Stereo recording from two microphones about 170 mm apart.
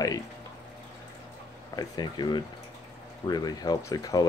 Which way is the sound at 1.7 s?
25° left (ahead or behind).